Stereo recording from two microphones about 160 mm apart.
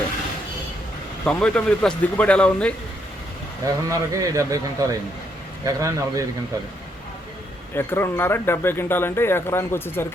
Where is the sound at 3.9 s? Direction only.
20° right (ahead or behind).